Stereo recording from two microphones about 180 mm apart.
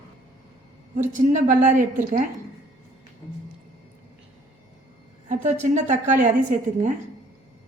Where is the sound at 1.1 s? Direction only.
45° right (ahead or behind).